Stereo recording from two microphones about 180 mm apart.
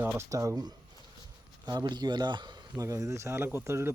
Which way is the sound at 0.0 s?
15° right (ahead or behind).